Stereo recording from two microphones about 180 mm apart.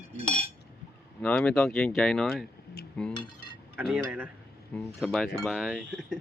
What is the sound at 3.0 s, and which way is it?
Cutlery, 5° left (ahead or behind).